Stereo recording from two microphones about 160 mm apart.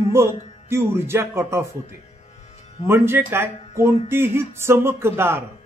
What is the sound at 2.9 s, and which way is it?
Speech, 15° right (ahead or behind).